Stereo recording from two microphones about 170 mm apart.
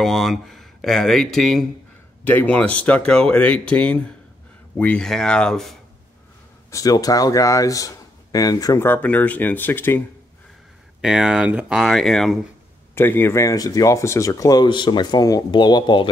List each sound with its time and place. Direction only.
0.0 s speech: centre (ahead or behind)
6.7 s a man's voice: 20° left (ahead or behind)
11.0 s speech: 5° right (ahead or behind)
12.9 s a man's voice: 15° left (ahead or behind)